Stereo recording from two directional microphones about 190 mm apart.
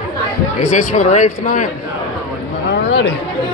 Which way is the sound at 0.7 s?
40° left (ahead or behind).